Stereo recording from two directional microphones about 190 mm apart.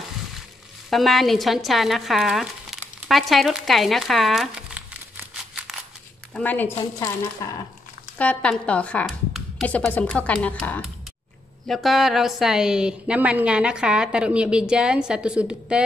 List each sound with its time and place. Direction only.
0.8 s speech: centre (ahead or behind)
5.5 s scissors: centre (ahead or behind)
6.3 s speech: 10° left (ahead or behind)
8.2 s a woman's voice: 5° left (ahead or behind)